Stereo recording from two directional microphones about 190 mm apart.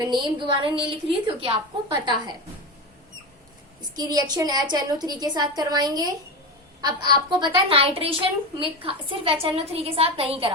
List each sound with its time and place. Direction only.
0.0 s a woman's voice: 25° right (ahead or behind)
3.8 s a woman's voice: 20° right (ahead or behind)
7.1 s a woman's voice: 25° right (ahead or behind)